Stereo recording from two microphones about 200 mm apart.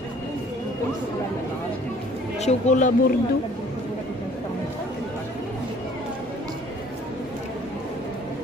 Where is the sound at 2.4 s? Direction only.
35° left (ahead or behind).